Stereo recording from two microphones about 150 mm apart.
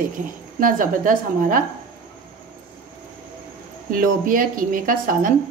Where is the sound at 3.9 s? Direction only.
65° right (ahead or behind).